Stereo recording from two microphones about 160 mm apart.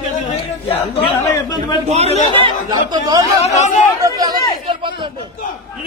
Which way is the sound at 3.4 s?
45° left (ahead or behind).